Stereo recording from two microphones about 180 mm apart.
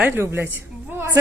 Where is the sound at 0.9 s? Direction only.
10° right (ahead or behind).